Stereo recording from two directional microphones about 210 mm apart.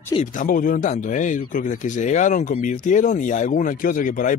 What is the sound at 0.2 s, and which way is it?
Speech, 40° left (ahead or behind).